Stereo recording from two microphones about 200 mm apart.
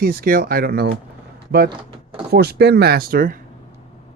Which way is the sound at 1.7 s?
25° right (ahead or behind).